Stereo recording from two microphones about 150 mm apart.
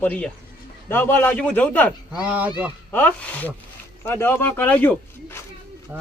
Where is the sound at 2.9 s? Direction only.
10° left (ahead or behind).